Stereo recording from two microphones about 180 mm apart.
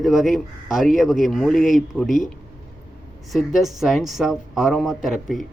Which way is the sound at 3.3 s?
Centre (ahead or behind).